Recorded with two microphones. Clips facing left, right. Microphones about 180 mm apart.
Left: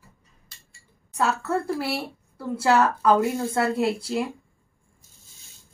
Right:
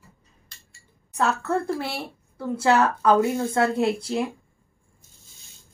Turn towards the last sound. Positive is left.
turn(degrees=0)  # may be behind; listen again after turning